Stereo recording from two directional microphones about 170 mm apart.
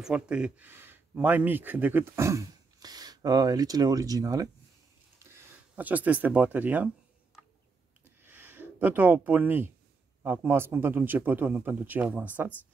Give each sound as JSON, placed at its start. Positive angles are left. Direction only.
{"t": 0.0, "sound": "speech", "side_deg": -5}
{"t": 8.0, "sound": "a sound", "side_deg": -10}
{"t": 10.2, "sound": "speech", "side_deg": -10}